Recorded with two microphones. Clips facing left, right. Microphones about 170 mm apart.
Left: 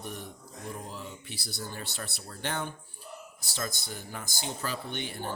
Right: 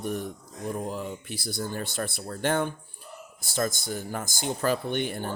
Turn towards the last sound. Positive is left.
turn(degrees=-55)  # may be behind; listen again after turning